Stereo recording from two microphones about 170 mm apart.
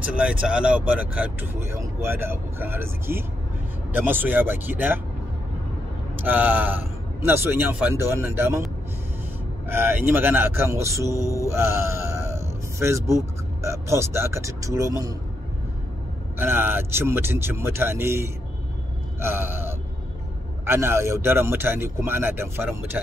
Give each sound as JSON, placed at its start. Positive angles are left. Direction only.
{"t": 0.1, "sound": "speech", "side_deg": -5}
{"t": 6.1, "sound": "speech", "side_deg": -10}
{"t": 9.7, "sound": "speech", "side_deg": -10}
{"t": 16.3, "sound": "speech", "side_deg": -10}
{"t": 19.1, "sound": "gasp", "side_deg": -15}
{"t": 20.6, "sound": "speech", "side_deg": -15}